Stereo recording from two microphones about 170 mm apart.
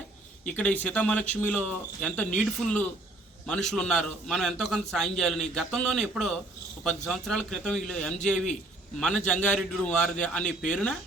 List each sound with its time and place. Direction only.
0.4 s a man's voice: 10° left (ahead or behind)